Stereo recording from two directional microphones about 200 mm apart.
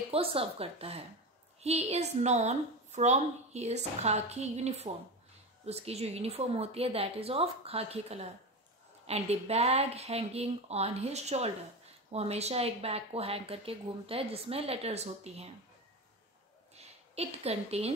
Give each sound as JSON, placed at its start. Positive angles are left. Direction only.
{"t": 0.1, "sound": "a woman's voice", "side_deg": -30}
{"t": 16.7, "sound": "a woman's voice", "side_deg": -30}